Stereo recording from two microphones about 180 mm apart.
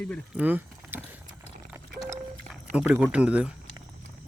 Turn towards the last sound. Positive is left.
turn(degrees=-5)  # may be behind; listen again after turning